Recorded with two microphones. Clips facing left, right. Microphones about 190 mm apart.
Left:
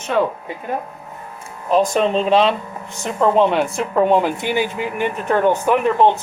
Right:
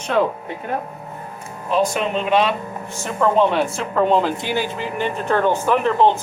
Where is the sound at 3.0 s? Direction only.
20° left (ahead or behind).